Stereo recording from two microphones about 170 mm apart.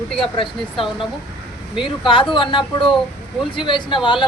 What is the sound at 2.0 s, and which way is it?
Speech, 30° left (ahead or behind).